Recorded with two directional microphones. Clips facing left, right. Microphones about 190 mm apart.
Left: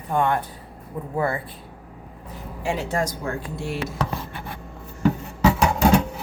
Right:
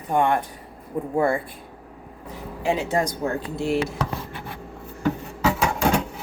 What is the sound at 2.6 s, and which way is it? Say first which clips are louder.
Speech: right 2 dB; 20° right (ahead or behind).